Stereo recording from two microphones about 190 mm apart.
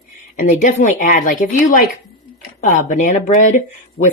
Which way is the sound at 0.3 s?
45° left (ahead or behind).